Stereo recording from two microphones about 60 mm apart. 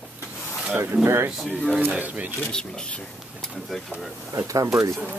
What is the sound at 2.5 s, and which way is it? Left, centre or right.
Speech, centre.